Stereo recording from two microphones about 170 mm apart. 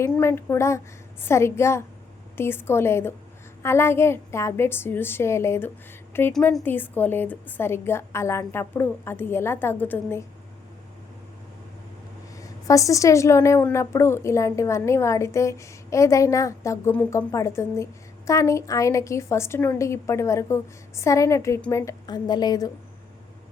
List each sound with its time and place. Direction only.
0.0 s a woman's voice: 15° left (ahead or behind)
12.4 s a woman's voice: 20° left (ahead or behind)